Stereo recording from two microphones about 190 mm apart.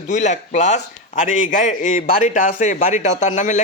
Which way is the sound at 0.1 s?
40° left (ahead or behind).